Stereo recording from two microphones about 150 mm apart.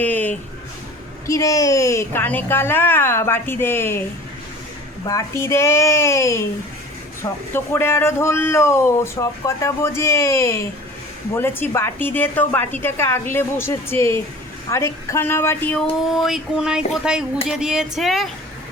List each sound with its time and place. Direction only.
0.0 s a sound: 10° left (ahead or behind)
1.3 s a woman's voice: 20° left (ahead or behind)
5.0 s a woman's voice: 20° left (ahead or behind); by 18.3 s centre (ahead or behind)